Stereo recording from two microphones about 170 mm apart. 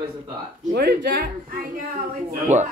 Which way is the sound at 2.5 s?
45° right (ahead or behind).